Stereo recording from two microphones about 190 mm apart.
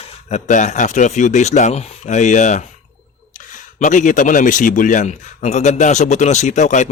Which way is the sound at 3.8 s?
40° left (ahead or behind).